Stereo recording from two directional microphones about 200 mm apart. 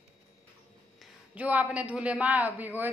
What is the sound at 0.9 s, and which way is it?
A woman's voice, 5° right (ahead or behind).